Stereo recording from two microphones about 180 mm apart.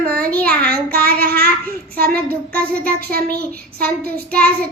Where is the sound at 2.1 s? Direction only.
5° left (ahead or behind).